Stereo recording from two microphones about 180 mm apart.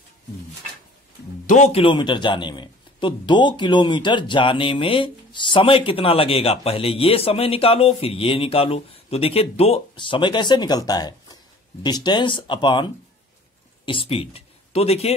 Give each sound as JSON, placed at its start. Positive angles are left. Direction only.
{"t": 1.5, "sound": "a man's voice", "side_deg": 35}